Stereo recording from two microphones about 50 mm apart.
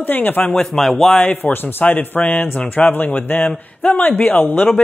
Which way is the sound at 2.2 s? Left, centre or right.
Left.